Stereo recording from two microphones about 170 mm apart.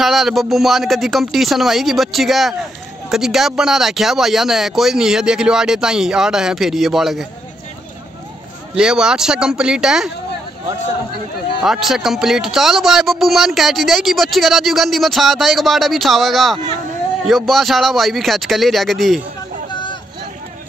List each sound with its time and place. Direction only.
0.0 s speech: centre (ahead or behind)
8.7 s speech: 5° right (ahead or behind)
11.6 s speech: centre (ahead or behind)
19.7 s hubbub: 25° left (ahead or behind)